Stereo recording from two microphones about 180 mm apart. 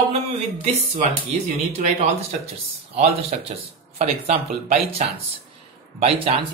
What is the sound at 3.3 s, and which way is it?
A man's voice, 40° right (ahead or behind).